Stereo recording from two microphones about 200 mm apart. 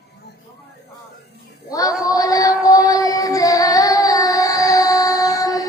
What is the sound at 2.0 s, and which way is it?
Music, 15° left (ahead or behind).